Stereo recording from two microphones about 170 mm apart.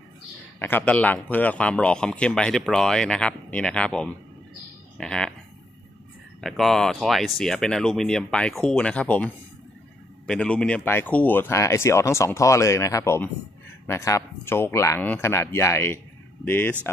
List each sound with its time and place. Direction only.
0.6 s a man's voice: 10° left (ahead or behind)
6.4 s a man's voice: centre (ahead or behind)